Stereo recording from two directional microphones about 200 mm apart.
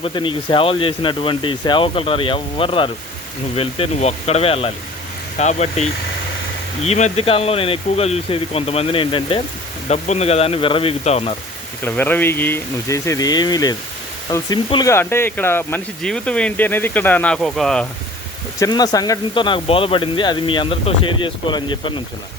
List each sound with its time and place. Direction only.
0.0 s speech: 25° left (ahead or behind)
11.8 s speech: 10° left (ahead or behind)
18.6 s speech: 20° left (ahead or behind)